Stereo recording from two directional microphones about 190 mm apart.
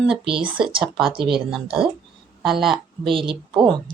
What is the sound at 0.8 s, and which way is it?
Speech, centre (ahead or behind).